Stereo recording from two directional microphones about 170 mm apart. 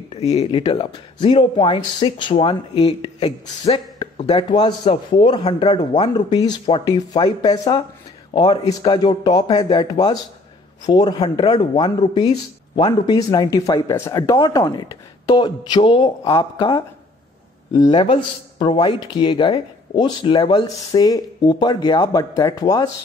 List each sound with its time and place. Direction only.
0.2 s speech: 40° left (ahead or behind)
17.8 s speech: 25° left (ahead or behind)